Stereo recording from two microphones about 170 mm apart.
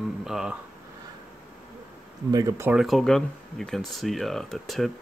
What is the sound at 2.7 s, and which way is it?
Speech, centre (ahead or behind).